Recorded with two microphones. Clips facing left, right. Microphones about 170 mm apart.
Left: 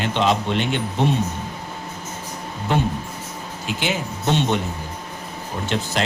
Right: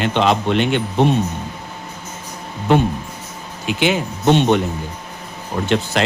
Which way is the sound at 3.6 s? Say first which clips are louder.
Right 7 dB; 65° right (ahead or behind).